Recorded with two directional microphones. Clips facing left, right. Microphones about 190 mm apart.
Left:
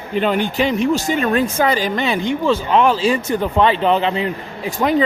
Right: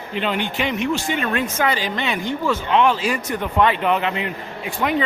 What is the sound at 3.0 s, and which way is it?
Speech, 30° left (ahead or behind).